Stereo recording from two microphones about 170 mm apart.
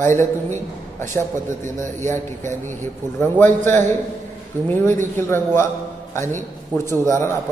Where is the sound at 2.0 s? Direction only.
15° left (ahead or behind).